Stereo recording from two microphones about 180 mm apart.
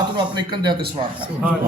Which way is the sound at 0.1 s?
25° right (ahead or behind).